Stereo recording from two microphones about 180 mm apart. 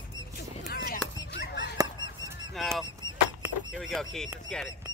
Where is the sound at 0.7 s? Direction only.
65° left (ahead or behind).